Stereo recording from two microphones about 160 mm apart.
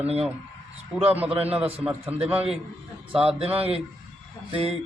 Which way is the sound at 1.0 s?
10° right (ahead or behind).